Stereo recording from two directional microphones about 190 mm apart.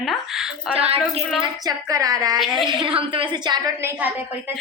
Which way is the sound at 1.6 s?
20° right (ahead or behind).